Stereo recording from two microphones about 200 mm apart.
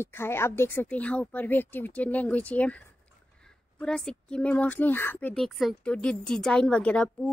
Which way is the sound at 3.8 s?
5° left (ahead or behind).